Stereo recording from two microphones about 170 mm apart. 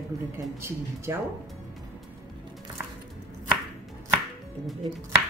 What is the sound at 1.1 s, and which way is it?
Speech, 15° right (ahead or behind).